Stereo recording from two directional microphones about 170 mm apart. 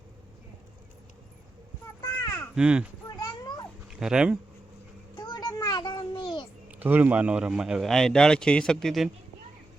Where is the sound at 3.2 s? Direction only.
25° left (ahead or behind).